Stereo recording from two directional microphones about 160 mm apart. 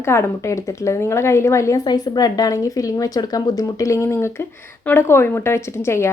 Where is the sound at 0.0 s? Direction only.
15° left (ahead or behind).